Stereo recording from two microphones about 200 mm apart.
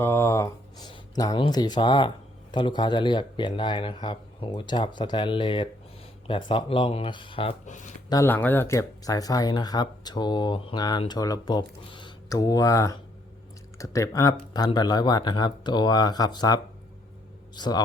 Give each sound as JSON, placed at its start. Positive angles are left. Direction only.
{"t": 0.0, "sound": "speech", "side_deg": 15}
{"t": 8.1, "sound": "speech", "side_deg": 10}